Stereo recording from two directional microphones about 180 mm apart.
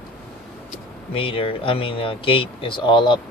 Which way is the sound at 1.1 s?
30° left (ahead or behind).